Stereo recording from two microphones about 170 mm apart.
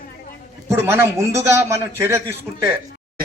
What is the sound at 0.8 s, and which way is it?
A man's voice, 15° right (ahead or behind).